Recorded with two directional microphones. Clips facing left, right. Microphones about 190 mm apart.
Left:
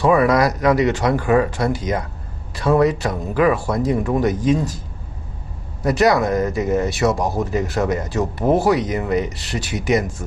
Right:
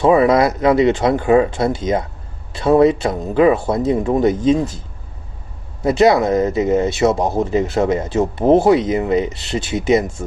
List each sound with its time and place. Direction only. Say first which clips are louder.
0.0 s speech: right 3 dB; 25° right (ahead or behind)
5.8 s speech: right 3 dB; 25° right (ahead or behind)